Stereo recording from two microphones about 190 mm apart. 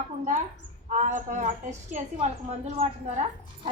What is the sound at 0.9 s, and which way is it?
A woman's voice, 40° right (ahead or behind).